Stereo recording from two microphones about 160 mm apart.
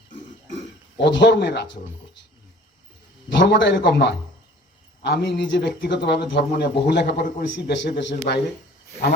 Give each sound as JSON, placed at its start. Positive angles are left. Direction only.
{"t": 0.9, "sound": "speech", "side_deg": 90}
{"t": 3.2, "sound": "speech", "side_deg": 90}